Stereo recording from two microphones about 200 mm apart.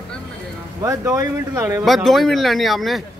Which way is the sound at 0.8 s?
15° right (ahead or behind).